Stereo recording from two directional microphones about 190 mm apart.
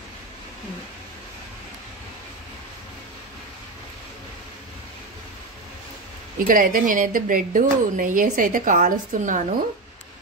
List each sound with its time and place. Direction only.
6.3 s speech: 45° right (ahead or behind)